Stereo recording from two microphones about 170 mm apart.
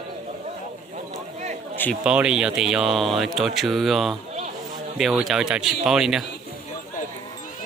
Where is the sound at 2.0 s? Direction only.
5° right (ahead or behind).